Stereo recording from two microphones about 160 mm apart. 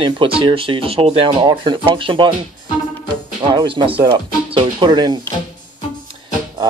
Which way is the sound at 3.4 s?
30° right (ahead or behind).